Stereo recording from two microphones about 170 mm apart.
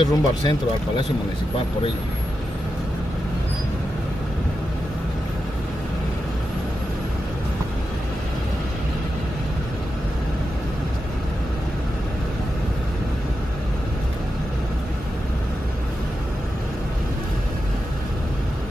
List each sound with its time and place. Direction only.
0.0 s speech: 30° left (ahead or behind)